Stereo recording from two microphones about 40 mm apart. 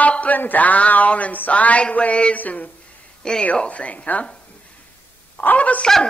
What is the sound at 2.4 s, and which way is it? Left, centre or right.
Speech, left.